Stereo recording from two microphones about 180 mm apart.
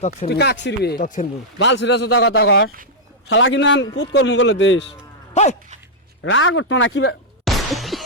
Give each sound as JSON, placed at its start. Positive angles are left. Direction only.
{"t": 0.3, "sound": "speech", "side_deg": 65}
{"t": 1.5, "sound": "a man's voice", "side_deg": 80}
{"t": 5.3, "sound": "dog", "side_deg": 40}
{"t": 6.2, "sound": "speech", "side_deg": 90}
{"t": 7.4, "sound": "a sound", "side_deg": 0}